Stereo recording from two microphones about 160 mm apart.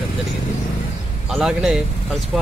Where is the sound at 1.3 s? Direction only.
5° right (ahead or behind).